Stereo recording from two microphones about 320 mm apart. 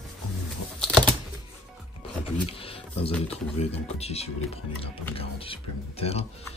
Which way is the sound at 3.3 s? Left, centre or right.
Centre.